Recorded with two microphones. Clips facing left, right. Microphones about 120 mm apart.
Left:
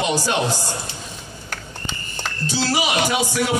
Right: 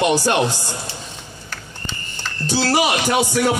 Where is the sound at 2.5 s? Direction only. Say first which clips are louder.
Right 4 dB; 55° right (ahead or behind).